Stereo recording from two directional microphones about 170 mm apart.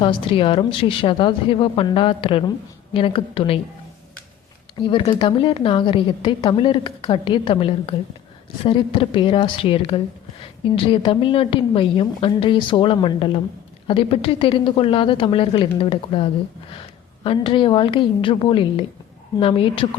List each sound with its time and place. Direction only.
0.0 s a woman's voice: 30° left (ahead or behind)
4.8 s a woman's voice: 30° left (ahead or behind)